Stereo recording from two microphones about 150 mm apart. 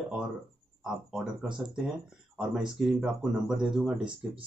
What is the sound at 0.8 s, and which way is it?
Speech, 5° right (ahead or behind).